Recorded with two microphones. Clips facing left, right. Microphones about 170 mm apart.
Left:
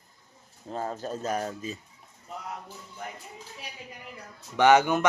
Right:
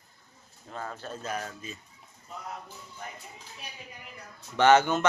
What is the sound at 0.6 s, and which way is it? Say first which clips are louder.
Speech: left 6 dB; 30° left (ahead or behind).